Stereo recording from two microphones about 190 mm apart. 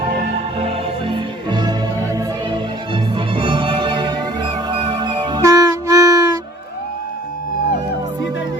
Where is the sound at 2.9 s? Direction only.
25° right (ahead or behind).